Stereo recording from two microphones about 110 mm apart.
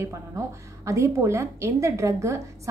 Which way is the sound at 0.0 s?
25° right (ahead or behind).